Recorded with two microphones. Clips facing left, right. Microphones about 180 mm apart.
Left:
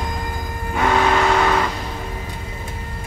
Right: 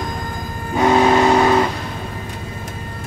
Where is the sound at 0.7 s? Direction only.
20° right (ahead or behind).